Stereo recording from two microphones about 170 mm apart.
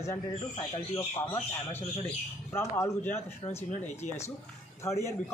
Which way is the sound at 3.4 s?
40° left (ahead or behind).